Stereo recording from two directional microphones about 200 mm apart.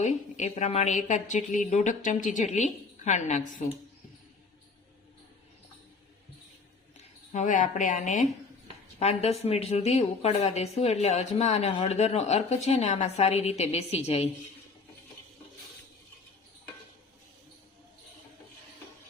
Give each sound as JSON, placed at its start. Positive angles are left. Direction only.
{"t": 0.0, "sound": "a woman's voice", "side_deg": 35}
{"t": 7.3, "sound": "a woman's voice", "side_deg": 40}